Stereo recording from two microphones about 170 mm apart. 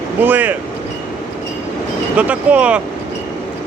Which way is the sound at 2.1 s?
10° right (ahead or behind).